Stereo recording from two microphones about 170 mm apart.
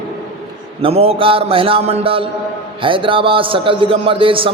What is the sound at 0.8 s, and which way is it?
A man's voice, 35° right (ahead or behind).